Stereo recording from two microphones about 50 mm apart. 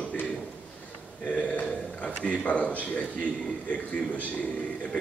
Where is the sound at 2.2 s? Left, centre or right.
Left.